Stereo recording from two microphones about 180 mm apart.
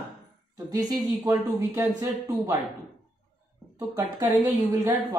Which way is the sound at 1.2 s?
15° right (ahead or behind).